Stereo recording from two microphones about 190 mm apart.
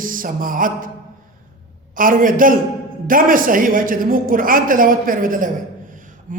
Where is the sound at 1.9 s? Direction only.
45° right (ahead or behind).